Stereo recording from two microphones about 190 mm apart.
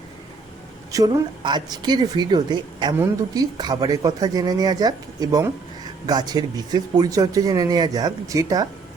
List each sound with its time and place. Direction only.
0.9 s a woman's voice: 20° right (ahead or behind)